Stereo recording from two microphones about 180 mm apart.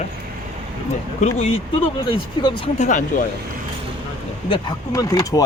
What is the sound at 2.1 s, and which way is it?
Speech, 25° left (ahead or behind).